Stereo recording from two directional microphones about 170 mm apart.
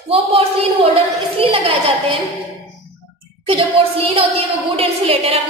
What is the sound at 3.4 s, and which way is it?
A woman's voice, 30° right (ahead or behind).